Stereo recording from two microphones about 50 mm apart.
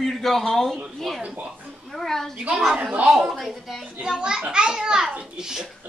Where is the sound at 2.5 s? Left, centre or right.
Centre.